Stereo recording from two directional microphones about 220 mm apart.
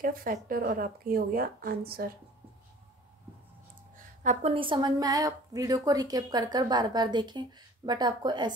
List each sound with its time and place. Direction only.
0.0 s a woman's voice: 40° right (ahead or behind)
3.9 s a woman's voice: 35° right (ahead or behind); by 8.5 s 20° right (ahead or behind)